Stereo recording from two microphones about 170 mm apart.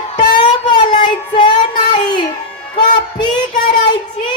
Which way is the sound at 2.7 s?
25° left (ahead or behind).